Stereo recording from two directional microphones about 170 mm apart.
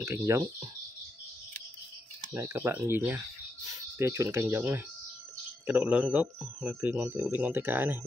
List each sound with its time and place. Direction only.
0.0 s speech: 15° right (ahead or behind)
2.3 s speech: 15° right (ahead or behind)